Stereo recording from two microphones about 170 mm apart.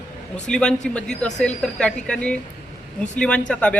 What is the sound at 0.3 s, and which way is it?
A woman's voice, 5° left (ahead or behind).